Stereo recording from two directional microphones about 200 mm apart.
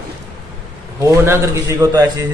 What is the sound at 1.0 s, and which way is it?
A man's voice, 10° right (ahead or behind).